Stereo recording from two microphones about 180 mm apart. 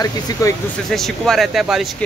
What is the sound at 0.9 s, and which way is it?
Speech, centre (ahead or behind).